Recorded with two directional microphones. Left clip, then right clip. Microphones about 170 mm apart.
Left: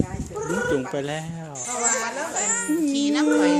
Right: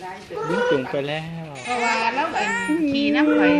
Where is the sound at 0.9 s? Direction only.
40° left (ahead or behind).